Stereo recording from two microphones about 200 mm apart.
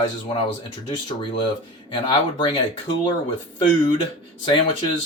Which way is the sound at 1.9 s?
25° left (ahead or behind).